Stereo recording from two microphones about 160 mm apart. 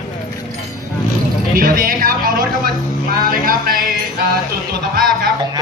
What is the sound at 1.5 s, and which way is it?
Speech, 60° right (ahead or behind).